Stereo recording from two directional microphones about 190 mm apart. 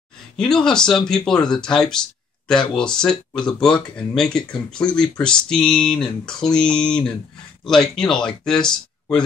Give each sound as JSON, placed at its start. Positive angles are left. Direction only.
{"t": 0.4, "sound": "speech", "side_deg": 5}